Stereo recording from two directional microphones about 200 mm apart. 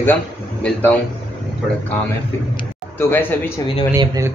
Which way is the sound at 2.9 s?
10° left (ahead or behind).